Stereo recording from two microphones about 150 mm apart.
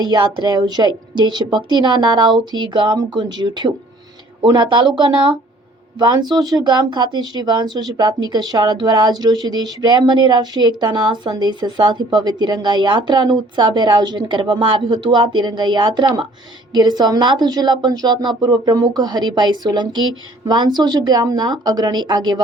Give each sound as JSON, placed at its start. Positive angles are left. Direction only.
{"t": 0.0, "sound": "speech", "side_deg": -30}